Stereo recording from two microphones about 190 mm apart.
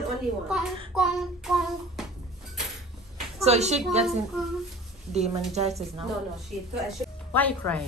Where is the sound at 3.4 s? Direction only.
35° right (ahead or behind).